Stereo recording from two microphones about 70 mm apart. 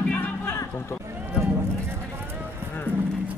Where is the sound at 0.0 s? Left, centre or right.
Left.